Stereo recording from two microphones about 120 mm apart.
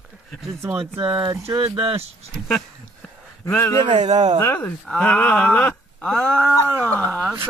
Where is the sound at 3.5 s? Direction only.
20° left (ahead or behind).